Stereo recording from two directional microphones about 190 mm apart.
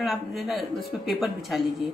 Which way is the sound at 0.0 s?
Centre (ahead or behind).